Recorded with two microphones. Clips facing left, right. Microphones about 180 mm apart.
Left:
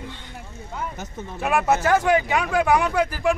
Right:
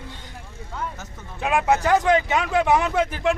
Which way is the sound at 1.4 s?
15° right (ahead or behind).